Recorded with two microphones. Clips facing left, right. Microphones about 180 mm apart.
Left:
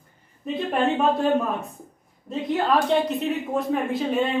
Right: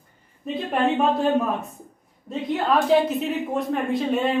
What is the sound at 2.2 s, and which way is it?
A woman's voice, centre (ahead or behind).